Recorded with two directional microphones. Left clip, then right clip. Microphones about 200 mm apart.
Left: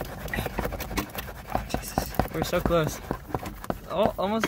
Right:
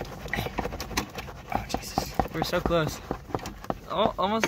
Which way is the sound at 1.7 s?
35° left (ahead or behind).